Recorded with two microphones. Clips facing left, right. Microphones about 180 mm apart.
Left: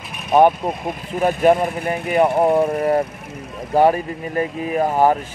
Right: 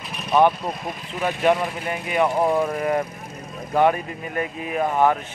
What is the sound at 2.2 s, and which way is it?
Speech, 20° left (ahead or behind).